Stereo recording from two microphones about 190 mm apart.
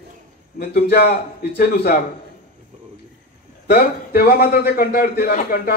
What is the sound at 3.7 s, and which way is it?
A man's voice, 55° left (ahead or behind).